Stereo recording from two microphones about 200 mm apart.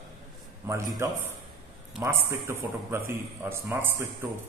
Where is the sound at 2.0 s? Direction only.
15° right (ahead or behind).